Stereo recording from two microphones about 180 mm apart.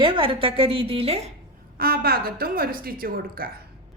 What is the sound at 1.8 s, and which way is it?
A woman's voice, 55° right (ahead or behind).